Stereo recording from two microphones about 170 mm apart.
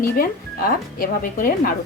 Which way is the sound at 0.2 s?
55° left (ahead or behind).